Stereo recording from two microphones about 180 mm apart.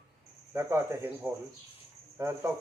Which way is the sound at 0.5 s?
15° right (ahead or behind).